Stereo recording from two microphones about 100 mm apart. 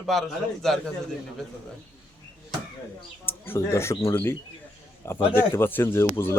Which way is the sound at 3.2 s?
25° left (ahead or behind).